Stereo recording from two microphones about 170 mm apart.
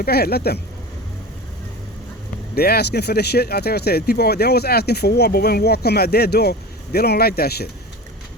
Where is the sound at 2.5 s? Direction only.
65° left (ahead or behind).